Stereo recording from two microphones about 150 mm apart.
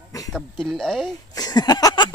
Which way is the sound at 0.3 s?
5° left (ahead or behind).